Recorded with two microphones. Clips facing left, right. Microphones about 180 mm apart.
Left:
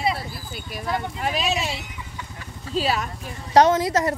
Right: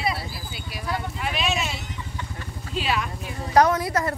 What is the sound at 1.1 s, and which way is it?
Speech, 40° left (ahead or behind).